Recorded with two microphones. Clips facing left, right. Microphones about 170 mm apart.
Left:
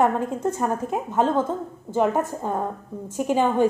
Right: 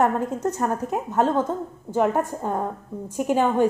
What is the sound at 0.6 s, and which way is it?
Speech, 5° left (ahead or behind).